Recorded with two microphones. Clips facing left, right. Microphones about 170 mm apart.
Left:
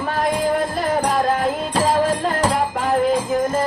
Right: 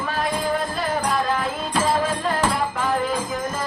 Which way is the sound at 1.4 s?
40° left (ahead or behind).